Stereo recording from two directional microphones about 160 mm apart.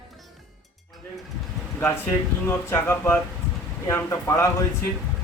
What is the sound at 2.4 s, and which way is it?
A man's voice, 15° left (ahead or behind).